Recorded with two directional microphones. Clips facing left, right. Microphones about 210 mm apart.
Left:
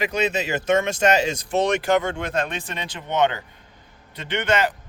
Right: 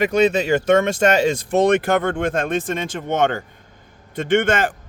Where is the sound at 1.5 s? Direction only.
55° right (ahead or behind).